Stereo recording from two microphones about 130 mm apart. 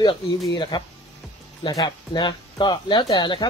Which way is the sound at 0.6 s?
35° left (ahead or behind).